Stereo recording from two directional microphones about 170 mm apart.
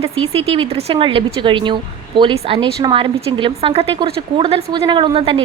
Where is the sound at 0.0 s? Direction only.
35° right (ahead or behind).